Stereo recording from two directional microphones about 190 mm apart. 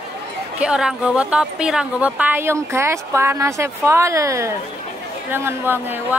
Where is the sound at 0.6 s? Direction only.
5° right (ahead or behind).